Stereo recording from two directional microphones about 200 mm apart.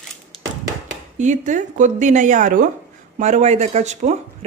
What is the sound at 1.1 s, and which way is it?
Speech, 35° right (ahead or behind).